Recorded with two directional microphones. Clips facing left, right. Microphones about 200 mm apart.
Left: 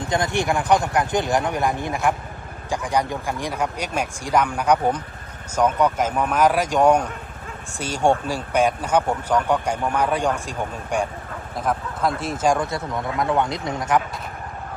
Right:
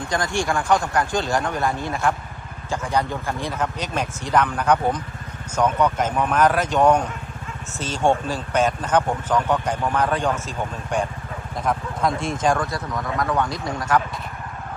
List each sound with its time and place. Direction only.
0.0 s speech: 20° left (ahead or behind)
12.5 s speech: 25° left (ahead or behind)